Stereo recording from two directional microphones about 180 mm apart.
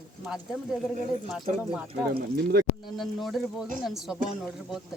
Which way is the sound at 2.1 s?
60° right (ahead or behind).